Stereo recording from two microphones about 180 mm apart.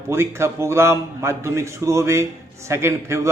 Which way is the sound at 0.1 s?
15° right (ahead or behind).